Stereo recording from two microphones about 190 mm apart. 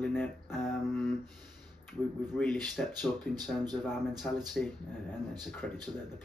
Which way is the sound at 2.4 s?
5° left (ahead or behind).